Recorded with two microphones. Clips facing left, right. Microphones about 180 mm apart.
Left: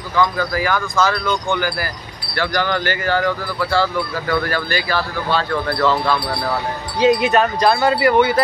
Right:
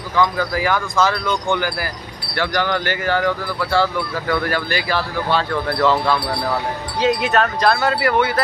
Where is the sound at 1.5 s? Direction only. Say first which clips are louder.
Even; 20° right (ahead or behind).